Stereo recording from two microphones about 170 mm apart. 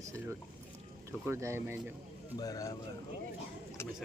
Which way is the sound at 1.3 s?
15° right (ahead or behind).